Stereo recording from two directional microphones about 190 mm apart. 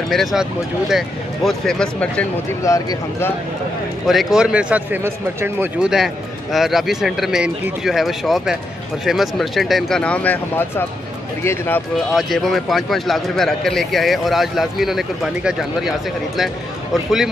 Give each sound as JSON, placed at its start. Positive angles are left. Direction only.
{"t": 0.1, "sound": "a man's voice", "side_deg": 0}
{"t": 2.6, "sound": "speech", "side_deg": 15}
{"t": 4.1, "sound": "a man's voice", "side_deg": 0}